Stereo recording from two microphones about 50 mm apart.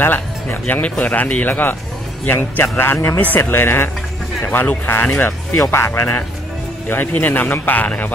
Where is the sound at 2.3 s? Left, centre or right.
Left.